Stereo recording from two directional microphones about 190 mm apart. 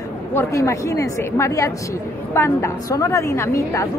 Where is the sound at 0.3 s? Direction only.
15° left (ahead or behind).